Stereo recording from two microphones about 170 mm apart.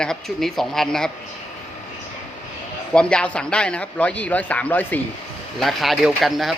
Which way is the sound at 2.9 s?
5° left (ahead or behind).